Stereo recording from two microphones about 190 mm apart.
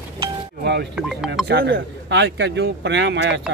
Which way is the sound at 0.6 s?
65° right (ahead or behind).